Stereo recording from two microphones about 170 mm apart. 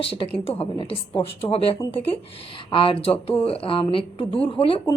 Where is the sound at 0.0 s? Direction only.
35° left (ahead or behind).